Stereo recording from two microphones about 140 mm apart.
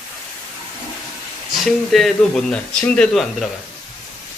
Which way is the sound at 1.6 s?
Centre (ahead or behind).